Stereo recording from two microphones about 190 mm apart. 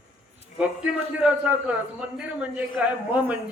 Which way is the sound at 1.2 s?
5° right (ahead or behind).